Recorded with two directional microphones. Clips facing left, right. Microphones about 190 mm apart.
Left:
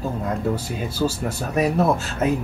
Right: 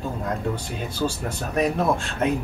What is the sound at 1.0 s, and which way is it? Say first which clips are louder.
Speech: left 3 dB; 15° left (ahead or behind).